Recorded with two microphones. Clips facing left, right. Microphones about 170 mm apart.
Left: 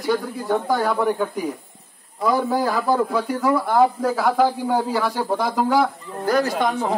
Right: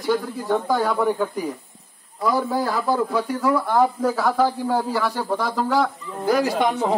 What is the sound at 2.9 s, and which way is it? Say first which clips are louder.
Speech: left 1 dB; 10° left (ahead or behind).